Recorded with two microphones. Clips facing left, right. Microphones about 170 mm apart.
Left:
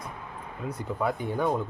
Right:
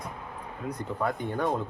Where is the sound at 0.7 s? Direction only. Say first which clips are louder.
Left 1 dB; 5° left (ahead or behind).